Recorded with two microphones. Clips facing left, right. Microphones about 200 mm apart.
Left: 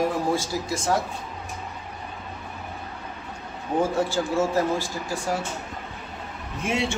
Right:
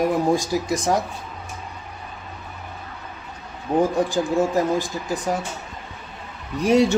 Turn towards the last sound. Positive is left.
turn(degrees=-40)  # may be behind; listen again after turning